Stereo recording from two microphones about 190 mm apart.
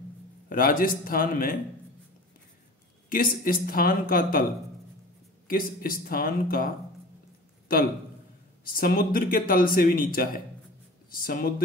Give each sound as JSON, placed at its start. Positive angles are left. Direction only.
{"t": 0.5, "sound": "a man's voice", "side_deg": 45}
{"t": 3.1, "sound": "a man's voice", "side_deg": 50}
{"t": 5.5, "sound": "a man's voice", "side_deg": 50}
{"t": 8.6, "sound": "a man's voice", "side_deg": 50}